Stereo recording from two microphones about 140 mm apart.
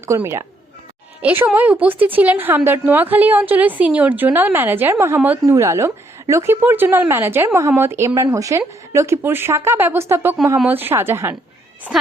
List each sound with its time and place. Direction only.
0.0 s a woman's voice: 20° right (ahead or behind)